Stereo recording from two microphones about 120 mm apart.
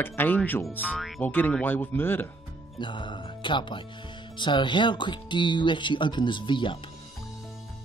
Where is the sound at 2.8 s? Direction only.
40° left (ahead or behind).